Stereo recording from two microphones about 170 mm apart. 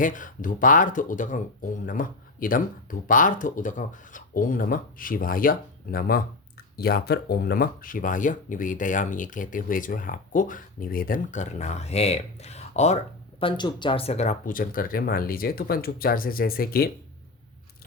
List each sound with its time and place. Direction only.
0.0 s speech: 50° left (ahead or behind)
13.4 s speech: 25° left (ahead or behind); by 16.9 s 60° left (ahead or behind)